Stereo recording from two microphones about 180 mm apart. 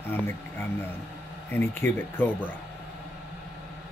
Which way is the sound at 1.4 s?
10° left (ahead or behind).